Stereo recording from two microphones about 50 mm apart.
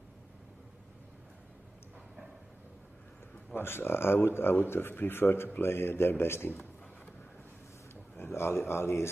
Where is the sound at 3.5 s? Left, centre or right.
Left.